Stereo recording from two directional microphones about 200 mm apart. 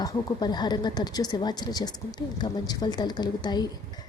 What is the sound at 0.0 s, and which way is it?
A woman's voice, 20° left (ahead or behind).